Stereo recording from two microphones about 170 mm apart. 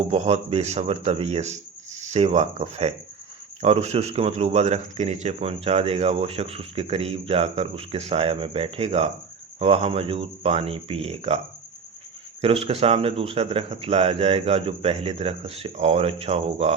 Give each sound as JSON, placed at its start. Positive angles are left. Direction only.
{"t": 0.0, "sound": "speech", "side_deg": -40}
{"t": 12.4, "sound": "speech", "side_deg": -35}